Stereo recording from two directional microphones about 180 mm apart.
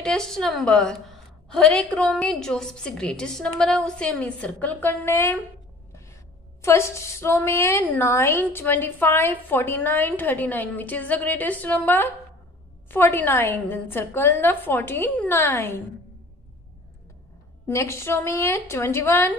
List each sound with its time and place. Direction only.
0.0 s a woman's voice: 5° left (ahead or behind)
6.6 s a woman's voice: 15° left (ahead or behind)
17.6 s a woman's voice: 15° left (ahead or behind)